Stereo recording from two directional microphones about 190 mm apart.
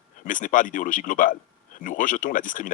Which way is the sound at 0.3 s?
45° left (ahead or behind).